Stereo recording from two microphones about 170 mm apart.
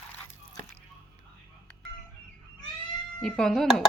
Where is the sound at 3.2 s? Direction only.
5° left (ahead or behind).